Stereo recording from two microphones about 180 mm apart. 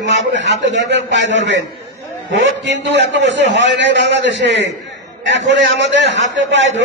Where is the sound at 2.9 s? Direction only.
85° right.